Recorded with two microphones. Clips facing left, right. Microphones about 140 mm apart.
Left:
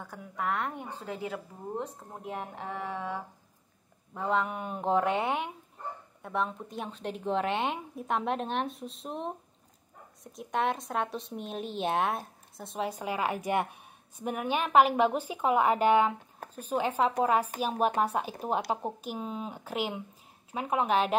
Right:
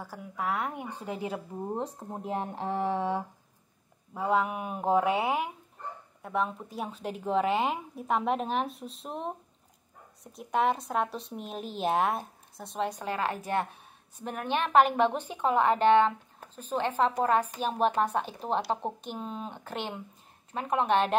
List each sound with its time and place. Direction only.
0.0 s a woman's voice: 5° right (ahead or behind); by 1.4 s 20° right (ahead or behind)
1.8 s speech: 30° right (ahead or behind)
4.1 s a woman's voice: 10° right (ahead or behind)